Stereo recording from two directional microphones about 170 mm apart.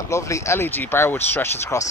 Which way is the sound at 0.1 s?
15° left (ahead or behind).